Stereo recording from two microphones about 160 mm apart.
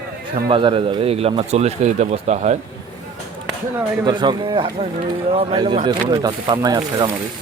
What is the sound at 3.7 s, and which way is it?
Speech, 25° right (ahead or behind).